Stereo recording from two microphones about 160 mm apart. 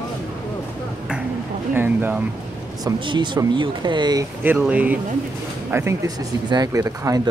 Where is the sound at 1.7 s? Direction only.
15° right (ahead or behind).